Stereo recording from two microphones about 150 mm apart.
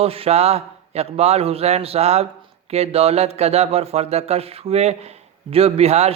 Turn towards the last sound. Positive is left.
turn(degrees=-45)  # may be behind; listen again after turning